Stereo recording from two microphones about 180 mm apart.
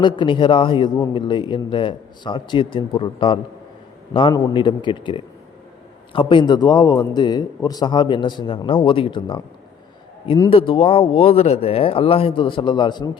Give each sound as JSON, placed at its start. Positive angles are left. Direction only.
{"t": 0.0, "sound": "a man's voice", "side_deg": 25}